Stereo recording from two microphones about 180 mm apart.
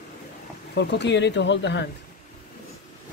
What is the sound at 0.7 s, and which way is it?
Speech, 70° left (ahead or behind).